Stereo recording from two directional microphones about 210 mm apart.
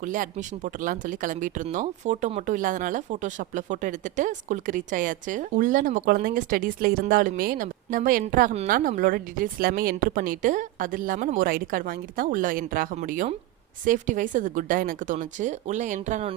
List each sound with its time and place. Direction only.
0.0 s speech: 40° right (ahead or behind)